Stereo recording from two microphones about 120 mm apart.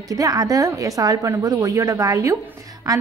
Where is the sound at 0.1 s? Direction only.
30° right (ahead or behind).